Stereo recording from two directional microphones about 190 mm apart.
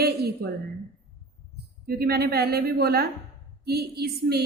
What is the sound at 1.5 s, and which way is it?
A woman's voice, 55° right (ahead or behind).